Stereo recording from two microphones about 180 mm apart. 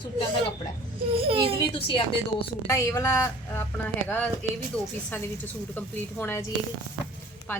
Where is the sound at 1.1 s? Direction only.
30° right (ahead or behind).